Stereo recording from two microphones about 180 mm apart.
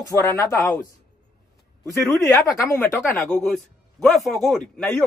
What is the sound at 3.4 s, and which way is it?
A man's voice, centre (ahead or behind).